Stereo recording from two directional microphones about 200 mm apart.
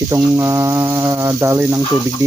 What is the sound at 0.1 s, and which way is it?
Speech, 15° right (ahead or behind).